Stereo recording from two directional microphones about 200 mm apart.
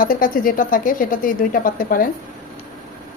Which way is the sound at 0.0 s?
45° left (ahead or behind).